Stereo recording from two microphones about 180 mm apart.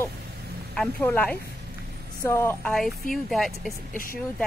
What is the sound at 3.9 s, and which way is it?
Speech, 50° left (ahead or behind).